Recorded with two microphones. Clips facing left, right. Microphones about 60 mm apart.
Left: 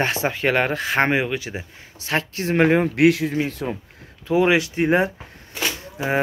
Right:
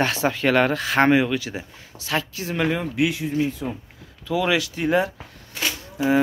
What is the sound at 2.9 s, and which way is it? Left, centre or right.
Speech, left.